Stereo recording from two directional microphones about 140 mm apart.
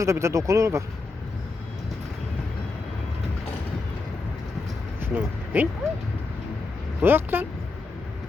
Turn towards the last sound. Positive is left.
turn(degrees=-15)  # may be behind; listen again after turning